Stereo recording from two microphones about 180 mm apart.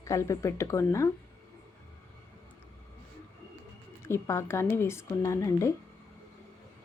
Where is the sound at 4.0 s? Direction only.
15° left (ahead or behind).